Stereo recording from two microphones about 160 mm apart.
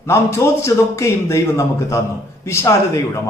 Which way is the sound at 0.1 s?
15° left (ahead or behind).